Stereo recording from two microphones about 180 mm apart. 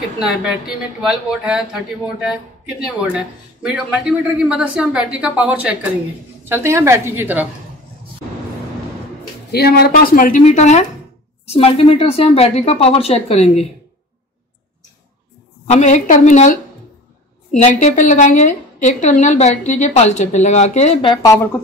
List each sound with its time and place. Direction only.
0.4 s a woman's voice: 5° right (ahead or behind)
9.5 s a woman's voice: 60° left (ahead or behind); by 13.7 s 35° left (ahead or behind)
15.6 s a woman's voice: 40° left (ahead or behind); by 21.4 s 25° left (ahead or behind)